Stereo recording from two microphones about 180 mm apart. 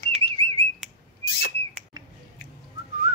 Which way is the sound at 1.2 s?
60° left (ahead or behind).